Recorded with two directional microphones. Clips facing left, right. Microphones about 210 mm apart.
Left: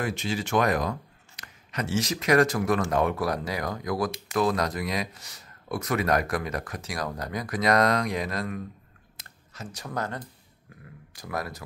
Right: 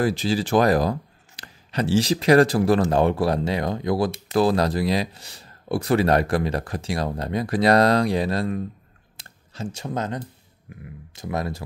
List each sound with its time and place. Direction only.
0.0 s speech: 35° right (ahead or behind)
9.1 s a sound: 30° right (ahead or behind)
10.7 s speech: 20° right (ahead or behind)